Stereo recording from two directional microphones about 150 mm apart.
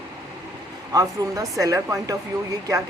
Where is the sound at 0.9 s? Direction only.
20° right (ahead or behind).